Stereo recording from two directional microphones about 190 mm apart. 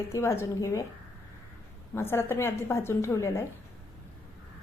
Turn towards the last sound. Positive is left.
turn(degrees=15)  # may be behind; listen again after turning